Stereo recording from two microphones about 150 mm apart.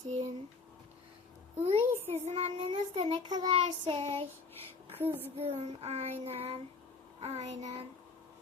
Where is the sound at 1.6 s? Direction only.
40° right (ahead or behind).